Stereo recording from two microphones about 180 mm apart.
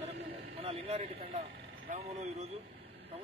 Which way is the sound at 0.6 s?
35° right (ahead or behind).